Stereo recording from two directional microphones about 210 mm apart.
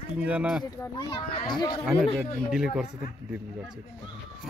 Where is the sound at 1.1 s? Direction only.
25° left (ahead or behind).